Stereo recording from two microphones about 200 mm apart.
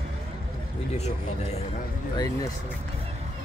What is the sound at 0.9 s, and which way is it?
Speech, 35° left (ahead or behind).